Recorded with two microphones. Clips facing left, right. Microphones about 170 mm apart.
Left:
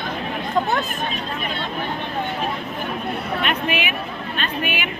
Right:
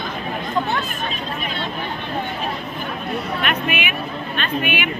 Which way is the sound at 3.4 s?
30° left (ahead or behind).